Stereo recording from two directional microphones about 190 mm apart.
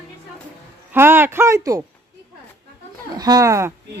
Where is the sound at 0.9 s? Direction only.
10° right (ahead or behind).